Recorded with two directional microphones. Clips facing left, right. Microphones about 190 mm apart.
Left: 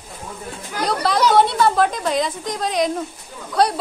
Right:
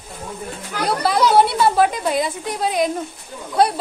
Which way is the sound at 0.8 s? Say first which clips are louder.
Right 1 dB; 5° right (ahead or behind).